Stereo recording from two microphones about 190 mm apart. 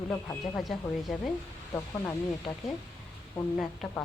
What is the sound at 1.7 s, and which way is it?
Speech, 15° left (ahead or behind).